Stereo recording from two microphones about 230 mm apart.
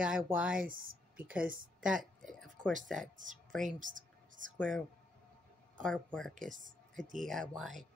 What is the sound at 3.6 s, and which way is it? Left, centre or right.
Whispering, right.